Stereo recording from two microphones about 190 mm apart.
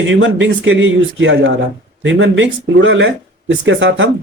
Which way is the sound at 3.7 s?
75° right (ahead or behind).